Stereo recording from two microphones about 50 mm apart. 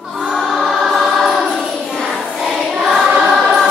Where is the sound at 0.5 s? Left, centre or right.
Centre.